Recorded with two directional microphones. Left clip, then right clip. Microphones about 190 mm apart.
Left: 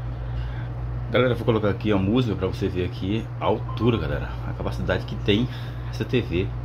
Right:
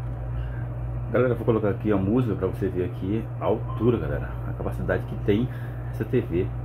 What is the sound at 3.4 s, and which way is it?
Speech, 15° left (ahead or behind).